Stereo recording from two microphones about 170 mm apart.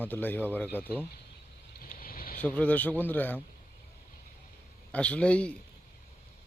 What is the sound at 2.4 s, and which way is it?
Speech, 10° left (ahead or behind).